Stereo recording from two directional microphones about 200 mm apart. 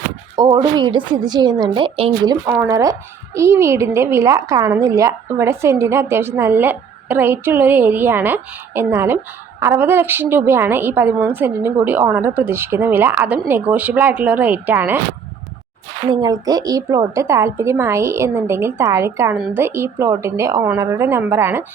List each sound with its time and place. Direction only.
0.3 s a woman's voice: 20° right (ahead or behind)
16.0 s a woman's voice: 20° right (ahead or behind)